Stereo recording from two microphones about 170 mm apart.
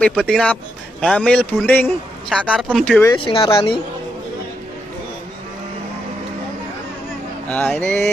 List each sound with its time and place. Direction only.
0.0 s a man's voice: 5° left (ahead or behind)
2.4 s speech: 5° right (ahead or behind)
2.8 s a man's voice: 5° left (ahead or behind)
3.3 s speech: 30° left (ahead or behind)
7.4 s a man's voice: 10° left (ahead or behind)